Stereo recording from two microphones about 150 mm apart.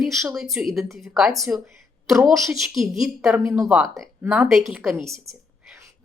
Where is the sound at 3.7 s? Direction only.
Centre (ahead or behind).